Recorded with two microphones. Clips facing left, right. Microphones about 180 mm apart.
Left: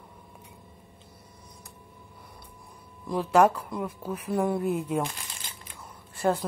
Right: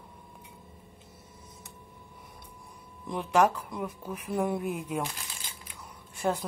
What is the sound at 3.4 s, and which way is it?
Speech, 10° left (ahead or behind).